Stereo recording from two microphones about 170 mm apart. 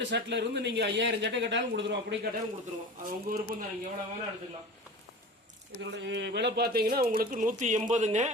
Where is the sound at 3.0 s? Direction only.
55° right (ahead or behind).